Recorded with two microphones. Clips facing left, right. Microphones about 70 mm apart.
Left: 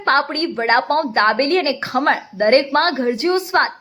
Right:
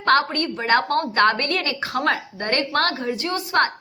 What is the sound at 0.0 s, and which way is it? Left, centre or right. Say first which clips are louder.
A woman's voice: left 2 dB; left.